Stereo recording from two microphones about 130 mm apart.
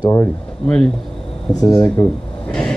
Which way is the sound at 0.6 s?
5° left (ahead or behind).